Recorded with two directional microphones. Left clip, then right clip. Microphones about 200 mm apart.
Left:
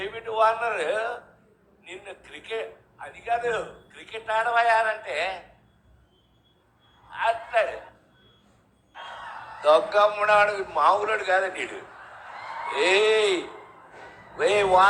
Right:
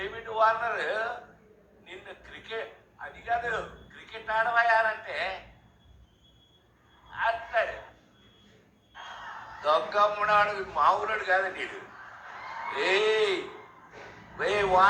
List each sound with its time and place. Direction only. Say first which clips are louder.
0.0 s a man's voice: left 3 dB; 25° left (ahead or behind)
7.1 s a sound: left 4 dB; 30° left (ahead or behind)
8.9 s a man's voice: left 3 dB; 30° left (ahead or behind)